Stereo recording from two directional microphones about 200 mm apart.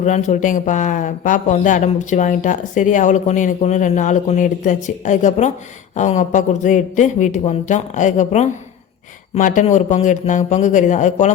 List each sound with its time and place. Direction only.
0.0 s speech: 35° left (ahead or behind)